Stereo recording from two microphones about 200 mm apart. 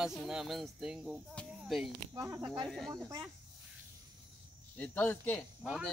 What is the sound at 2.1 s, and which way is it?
Speech, 15° right (ahead or behind).